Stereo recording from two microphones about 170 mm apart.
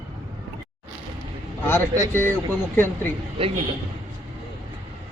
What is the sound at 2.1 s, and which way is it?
Mantra, 10° left (ahead or behind).